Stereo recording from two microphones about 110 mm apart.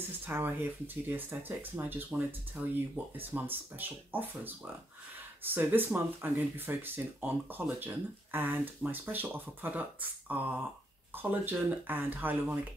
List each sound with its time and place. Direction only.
0.0 s speech: 20° right (ahead or behind)